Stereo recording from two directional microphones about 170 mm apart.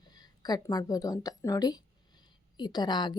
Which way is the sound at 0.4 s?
25° left (ahead or behind).